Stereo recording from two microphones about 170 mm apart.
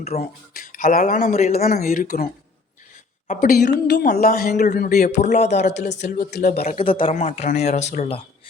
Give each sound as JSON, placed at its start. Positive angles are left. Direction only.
{"t": 0.2, "sound": "speech", "side_deg": 55}
{"t": 3.2, "sound": "speech", "side_deg": 60}
{"t": 3.8, "sound": "speech", "side_deg": 75}
{"t": 5.2, "sound": "speech", "side_deg": 40}
{"t": 6.7, "sound": "speech", "side_deg": 30}
{"t": 7.2, "sound": "speech", "side_deg": 45}